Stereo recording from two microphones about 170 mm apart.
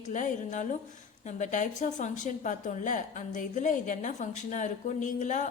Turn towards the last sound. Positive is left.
turn(degrees=45)  # may be behind; listen again after turning